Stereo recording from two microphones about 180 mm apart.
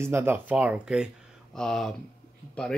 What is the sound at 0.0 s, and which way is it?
A man's voice, 10° right (ahead or behind).